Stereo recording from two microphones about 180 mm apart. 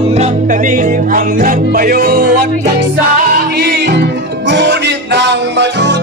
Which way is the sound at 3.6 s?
70° right (ahead or behind).